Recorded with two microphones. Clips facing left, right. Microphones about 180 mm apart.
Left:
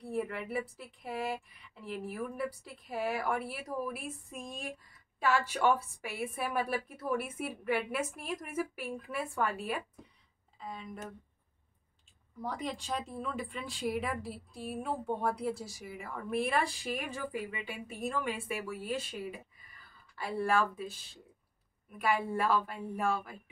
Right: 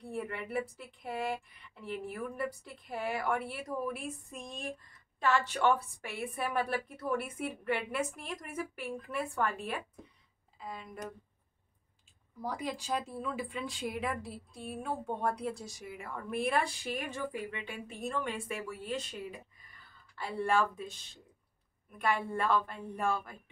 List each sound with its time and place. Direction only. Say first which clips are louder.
0.0 s speech: left 3 dB; centre (ahead or behind)
10.6 s speech: even; 5° right (ahead or behind)
12.4 s a woman's voice: even; 5° right (ahead or behind)